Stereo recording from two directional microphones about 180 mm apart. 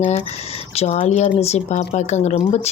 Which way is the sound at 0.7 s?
35° left (ahead or behind).